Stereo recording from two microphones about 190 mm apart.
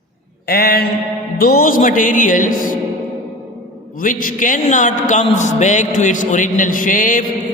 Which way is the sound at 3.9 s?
45° left (ahead or behind).